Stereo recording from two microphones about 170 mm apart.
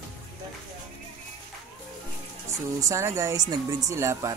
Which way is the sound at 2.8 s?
20° right (ahead or behind).